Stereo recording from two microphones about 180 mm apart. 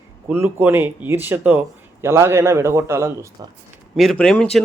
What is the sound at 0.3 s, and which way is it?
A man's voice, 10° right (ahead or behind).